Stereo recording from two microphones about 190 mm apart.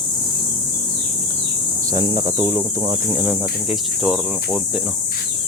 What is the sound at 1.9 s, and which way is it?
Speech, 25° right (ahead or behind).